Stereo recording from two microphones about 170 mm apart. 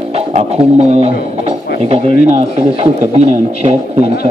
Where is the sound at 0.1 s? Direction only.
35° right (ahead or behind).